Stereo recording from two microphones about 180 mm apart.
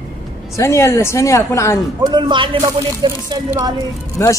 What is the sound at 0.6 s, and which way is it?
Speech, 15° left (ahead or behind).